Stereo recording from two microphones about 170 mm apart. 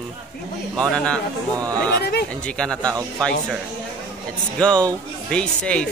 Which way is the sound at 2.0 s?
75° left (ahead or behind).